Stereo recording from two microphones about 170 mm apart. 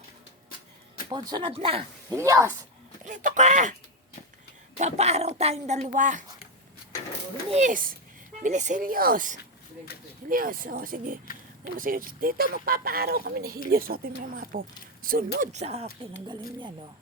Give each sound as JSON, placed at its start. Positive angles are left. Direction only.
{"t": 1.1, "sound": "speech", "side_deg": -30}
{"t": 2.0, "sound": "speech", "side_deg": -20}
{"t": 3.0, "sound": "a woman's voice", "side_deg": -50}
{"t": 4.8, "sound": "a woman's voice", "side_deg": -40}
{"t": 7.5, "sound": "a woman's voice", "side_deg": -50}
{"t": 9.4, "sound": "a sound", "side_deg": 65}
{"t": 10.2, "sound": "speech", "side_deg": -55}
{"t": 15.5, "sound": "speech", "side_deg": -40}
{"t": 16.2, "sound": "speech", "side_deg": -25}